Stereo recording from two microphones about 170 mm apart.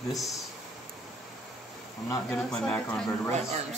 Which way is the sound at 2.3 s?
5° left (ahead or behind).